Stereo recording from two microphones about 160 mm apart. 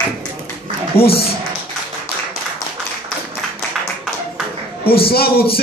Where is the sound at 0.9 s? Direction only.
75° left (ahead or behind).